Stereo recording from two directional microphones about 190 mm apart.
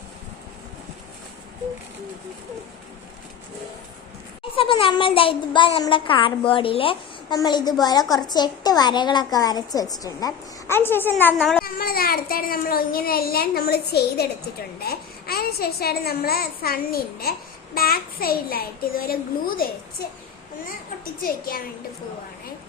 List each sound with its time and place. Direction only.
4.5 s a woman's voice: 30° left (ahead or behind); by 11.6 s 5° left (ahead or behind)
11.6 s a child's voice: 50° left (ahead or behind)
21.0 s a child's voice: 50° left (ahead or behind)